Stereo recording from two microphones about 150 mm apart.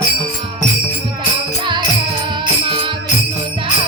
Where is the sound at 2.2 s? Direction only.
35° right (ahead or behind).